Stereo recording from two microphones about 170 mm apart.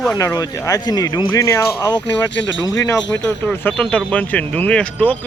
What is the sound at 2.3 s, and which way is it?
Speech, 90° left.